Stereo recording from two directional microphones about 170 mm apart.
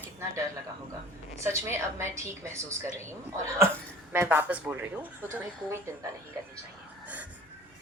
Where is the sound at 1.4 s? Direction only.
15° right (ahead or behind).